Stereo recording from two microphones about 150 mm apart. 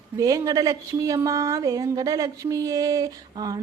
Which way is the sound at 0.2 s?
20° right (ahead or behind).